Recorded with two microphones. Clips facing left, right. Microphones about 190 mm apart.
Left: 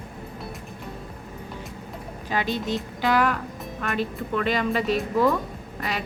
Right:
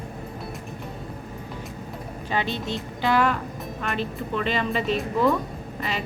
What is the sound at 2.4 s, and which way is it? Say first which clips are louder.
Speech: left 3 dB; 45° left (ahead or behind).